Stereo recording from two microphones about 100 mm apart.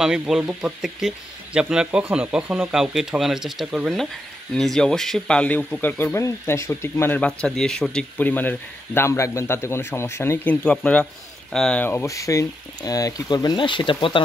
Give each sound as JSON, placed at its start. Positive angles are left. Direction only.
{"t": 0.5, "sound": "speech", "side_deg": -5}
{"t": 2.4, "sound": "speech", "side_deg": -20}
{"t": 2.7, "sound": "a man's voice", "side_deg": -5}
{"t": 8.2, "sound": "a man's voice", "side_deg": 15}
{"t": 10.4, "sound": "speech", "side_deg": 15}
{"t": 11.8, "sound": "speech", "side_deg": 25}